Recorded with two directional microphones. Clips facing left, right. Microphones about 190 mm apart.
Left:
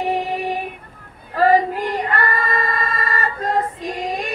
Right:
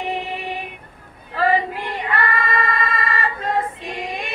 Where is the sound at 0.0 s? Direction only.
40° left (ahead or behind).